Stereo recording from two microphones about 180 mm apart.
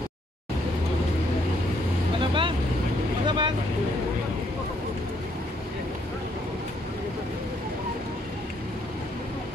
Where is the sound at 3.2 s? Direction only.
25° right (ahead or behind).